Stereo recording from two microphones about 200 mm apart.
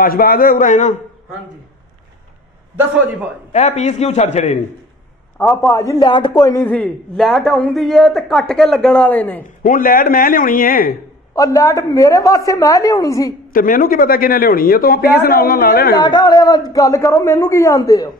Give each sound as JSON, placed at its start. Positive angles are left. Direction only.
{"t": 0.0, "sound": "a man's voice", "side_deg": 45}
{"t": 3.5, "sound": "a man's voice", "side_deg": 35}
{"t": 5.7, "sound": "speech", "side_deg": 15}
{"t": 6.4, "sound": "a man's voice", "side_deg": 10}
{"t": 9.6, "sound": "a man's voice", "side_deg": 45}
{"t": 11.3, "sound": "a man's voice", "side_deg": 15}
{"t": 13.5, "sound": "a man's voice", "side_deg": 45}
{"t": 16.0, "sound": "a man's voice", "side_deg": 20}